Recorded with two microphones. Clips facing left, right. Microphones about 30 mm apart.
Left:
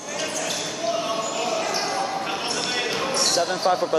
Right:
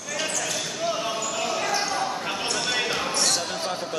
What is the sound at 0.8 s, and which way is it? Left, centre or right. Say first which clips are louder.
Basketball bounce: left 3 dB; centre.